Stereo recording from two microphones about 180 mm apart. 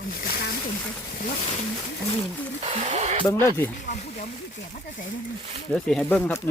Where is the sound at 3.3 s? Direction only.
15° left (ahead or behind).